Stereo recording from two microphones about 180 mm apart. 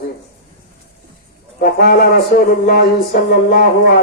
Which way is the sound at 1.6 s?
55° left (ahead or behind).